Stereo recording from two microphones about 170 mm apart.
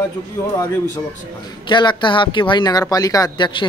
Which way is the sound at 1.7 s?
25° left (ahead or behind).